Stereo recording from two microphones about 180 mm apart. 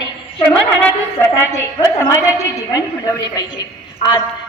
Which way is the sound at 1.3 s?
15° left (ahead or behind).